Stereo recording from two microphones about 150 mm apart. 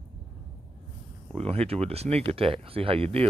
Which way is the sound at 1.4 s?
40° right (ahead or behind).